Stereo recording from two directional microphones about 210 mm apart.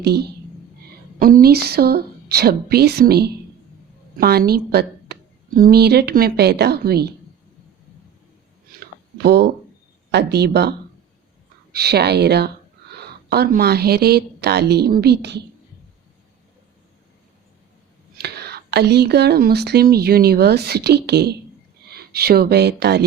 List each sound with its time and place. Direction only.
0.0 s a woman's voice: 50° right (ahead or behind)
9.1 s a woman's voice: 50° right (ahead or behind)
18.2 s speech: 50° right (ahead or behind)